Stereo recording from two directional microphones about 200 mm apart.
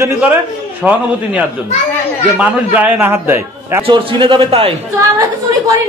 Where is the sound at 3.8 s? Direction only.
25° right (ahead or behind).